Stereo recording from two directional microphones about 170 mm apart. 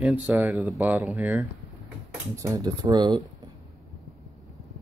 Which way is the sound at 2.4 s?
20° right (ahead or behind).